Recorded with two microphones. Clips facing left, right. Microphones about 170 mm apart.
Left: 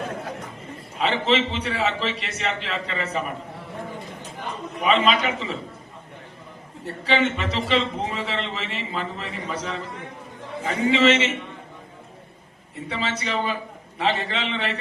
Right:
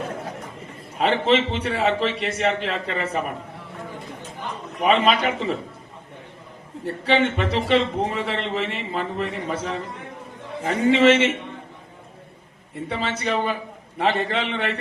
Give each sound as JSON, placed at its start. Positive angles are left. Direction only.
{"t": 0.9, "sound": "speech", "side_deg": -50}
{"t": 4.8, "sound": "speech", "side_deg": -50}
{"t": 6.8, "sound": "a man's voice", "side_deg": -55}
{"t": 12.9, "sound": "a man's voice", "side_deg": -55}